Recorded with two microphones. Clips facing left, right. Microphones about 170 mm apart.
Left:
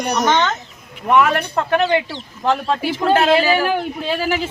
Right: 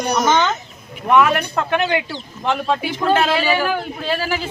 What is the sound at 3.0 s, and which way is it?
A woman's voice, 25° left (ahead or behind).